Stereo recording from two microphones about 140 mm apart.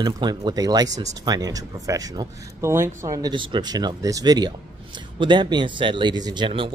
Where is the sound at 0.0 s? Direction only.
30° right (ahead or behind).